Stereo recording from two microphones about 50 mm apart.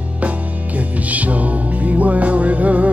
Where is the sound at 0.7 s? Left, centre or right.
Right.